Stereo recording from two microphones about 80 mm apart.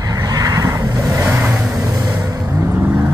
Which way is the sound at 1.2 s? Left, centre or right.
Right.